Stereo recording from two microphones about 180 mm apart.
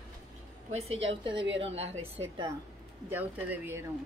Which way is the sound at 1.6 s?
35° right (ahead or behind).